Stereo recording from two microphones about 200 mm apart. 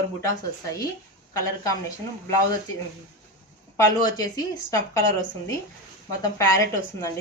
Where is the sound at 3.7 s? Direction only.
15° left (ahead or behind).